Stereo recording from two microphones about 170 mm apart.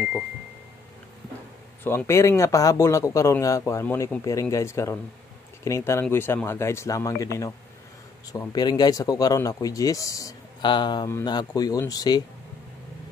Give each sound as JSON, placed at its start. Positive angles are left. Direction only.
{"t": 1.8, "sound": "speech", "side_deg": 15}